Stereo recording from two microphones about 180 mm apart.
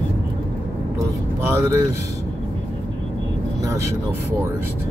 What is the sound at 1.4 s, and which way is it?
Speech, 15° right (ahead or behind).